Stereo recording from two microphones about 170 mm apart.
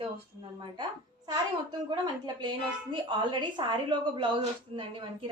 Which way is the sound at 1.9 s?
25° right (ahead or behind).